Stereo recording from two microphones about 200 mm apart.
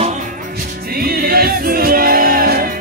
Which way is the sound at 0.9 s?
50° right (ahead or behind).